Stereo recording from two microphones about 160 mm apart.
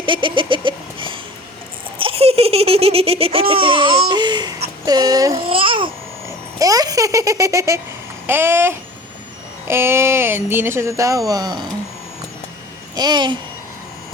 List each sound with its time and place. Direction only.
0.0 s a sound: 30° right (ahead or behind)
2.0 s baby laughter: 35° right (ahead or behind)
4.9 s a sound: 25° right (ahead or behind)
5.4 s babbling: 35° right (ahead or behind)
6.6 s a child's voice: 20° right (ahead or behind)
13.0 s speech: 25° right (ahead or behind)